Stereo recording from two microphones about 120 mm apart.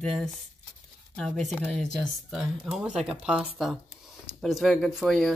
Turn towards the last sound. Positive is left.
turn(degrees=0)  # may be behind; listen again after turning